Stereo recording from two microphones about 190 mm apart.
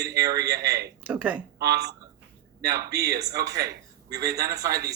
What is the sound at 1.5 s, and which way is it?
Speech, 60° right (ahead or behind).